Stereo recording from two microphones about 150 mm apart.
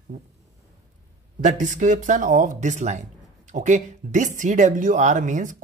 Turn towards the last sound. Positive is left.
turn(degrees=-55)  # may be behind; listen again after turning